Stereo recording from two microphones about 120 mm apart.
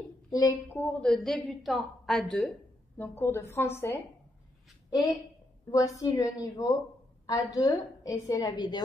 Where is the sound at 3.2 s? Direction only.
20° left (ahead or behind).